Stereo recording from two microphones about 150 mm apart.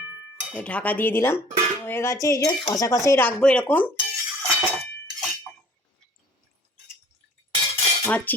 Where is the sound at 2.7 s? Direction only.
20° left (ahead or behind).